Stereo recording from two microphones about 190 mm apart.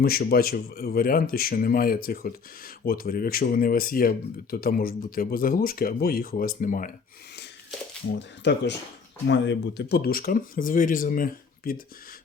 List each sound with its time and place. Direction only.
0.0 s speech: 50° left (ahead or behind)
8.4 s speech: 70° left (ahead or behind); by 11.8 s 50° left (ahead or behind)